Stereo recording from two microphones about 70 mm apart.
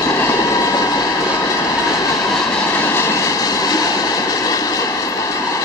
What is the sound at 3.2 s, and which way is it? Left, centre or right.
Train, left.